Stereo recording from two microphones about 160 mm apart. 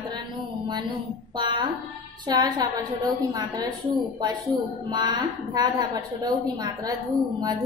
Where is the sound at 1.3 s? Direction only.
30° right (ahead or behind).